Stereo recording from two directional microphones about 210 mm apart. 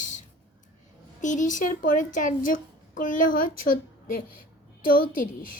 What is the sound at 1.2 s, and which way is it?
A woman's voice, 35° left (ahead or behind).